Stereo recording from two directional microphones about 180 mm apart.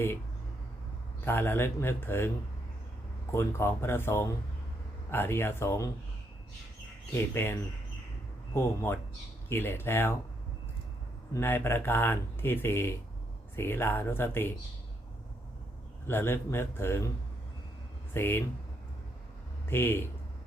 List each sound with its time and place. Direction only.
1.2 s speech: 10° left (ahead or behind)
3.3 s speech: 15° left (ahead or behind)
7.1 s speech: 10° left (ahead or behind)
8.5 s speech: 15° left (ahead or behind)
11.3 s speech: 10° left (ahead or behind)
16.0 s speech: 15° left (ahead or behind)
18.1 s speech: 10° left (ahead or behind)
19.6 s speech: 10° left (ahead or behind)